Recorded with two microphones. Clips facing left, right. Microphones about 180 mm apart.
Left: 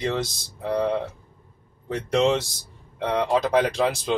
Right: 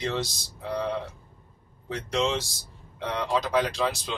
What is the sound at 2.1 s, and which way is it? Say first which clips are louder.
Speech: left 6 dB; 60° left (ahead or behind).